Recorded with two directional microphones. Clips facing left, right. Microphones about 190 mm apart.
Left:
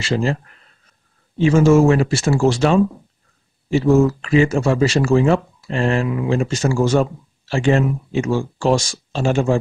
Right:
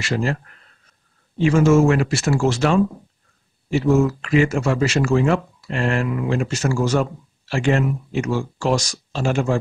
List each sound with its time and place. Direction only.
0.0 s speech: 25° left (ahead or behind)
1.4 s speech: 30° left (ahead or behind)